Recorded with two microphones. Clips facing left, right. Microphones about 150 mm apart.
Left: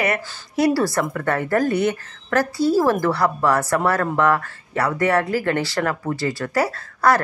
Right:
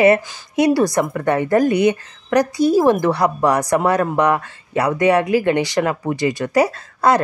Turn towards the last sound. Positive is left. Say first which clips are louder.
# right 2 dB
turn(degrees=-20)  # may be behind; listen again after turning